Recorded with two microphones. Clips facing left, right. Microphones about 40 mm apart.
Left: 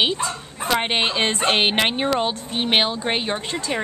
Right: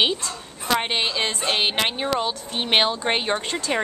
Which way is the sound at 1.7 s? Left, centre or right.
Left.